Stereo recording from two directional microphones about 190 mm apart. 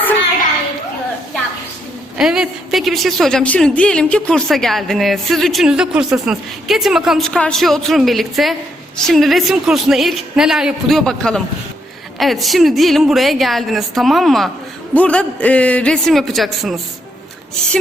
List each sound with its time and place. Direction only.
2.1 s a woman's voice: 5° right (ahead or behind)